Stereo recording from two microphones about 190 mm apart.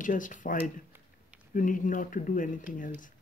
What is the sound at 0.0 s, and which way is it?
Speech, 45° left (ahead or behind).